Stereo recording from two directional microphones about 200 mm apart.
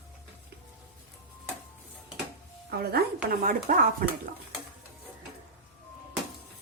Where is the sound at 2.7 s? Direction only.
50° right (ahead or behind).